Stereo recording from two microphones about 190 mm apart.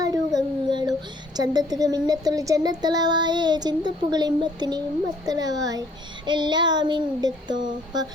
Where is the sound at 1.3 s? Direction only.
20° right (ahead or behind).